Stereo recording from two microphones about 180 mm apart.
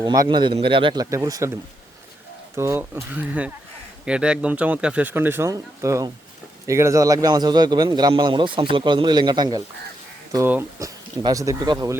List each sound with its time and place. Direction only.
0.0 s a man's voice: 20° right (ahead or behind)
2.6 s a man's voice: 15° right (ahead or behind)
10.3 s a man's voice: 10° right (ahead or behind)